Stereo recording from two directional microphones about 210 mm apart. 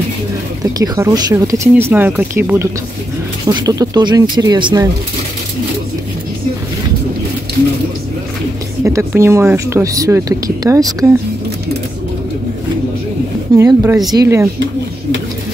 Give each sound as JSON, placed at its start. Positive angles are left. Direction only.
{"t": 0.7, "sound": "speech", "side_deg": -15}
{"t": 8.8, "sound": "speech", "side_deg": -15}
{"t": 13.6, "sound": "speech", "side_deg": -15}